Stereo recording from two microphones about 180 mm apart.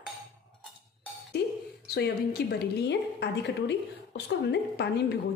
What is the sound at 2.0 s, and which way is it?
A woman's voice, 65° left (ahead or behind).